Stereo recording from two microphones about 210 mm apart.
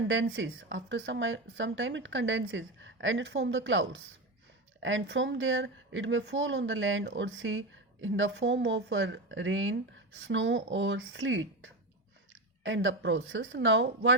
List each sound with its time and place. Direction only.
0.1 s speech: 65° right (ahead or behind)